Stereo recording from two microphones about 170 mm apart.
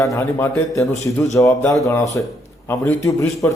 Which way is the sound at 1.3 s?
15° left (ahead or behind).